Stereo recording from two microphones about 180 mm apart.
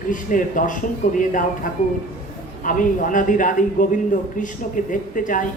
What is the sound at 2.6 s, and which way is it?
A woman's voice, 45° left (ahead or behind).